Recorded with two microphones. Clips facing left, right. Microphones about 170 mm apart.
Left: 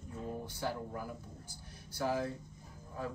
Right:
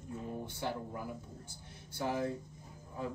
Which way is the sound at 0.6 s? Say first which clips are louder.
Even; 20° right (ahead or behind).